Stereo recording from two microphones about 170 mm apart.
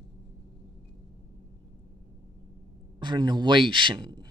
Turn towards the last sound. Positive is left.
turn(degrees=-25)  # may be behind; listen again after turning